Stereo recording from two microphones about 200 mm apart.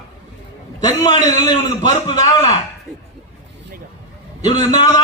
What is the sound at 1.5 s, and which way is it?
Speech, 35° right (ahead or behind).